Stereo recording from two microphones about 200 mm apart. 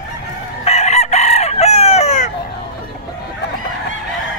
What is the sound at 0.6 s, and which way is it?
Chicken, 30° left (ahead or behind).